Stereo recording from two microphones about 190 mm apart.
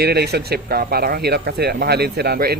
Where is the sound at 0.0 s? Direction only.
55° right (ahead or behind).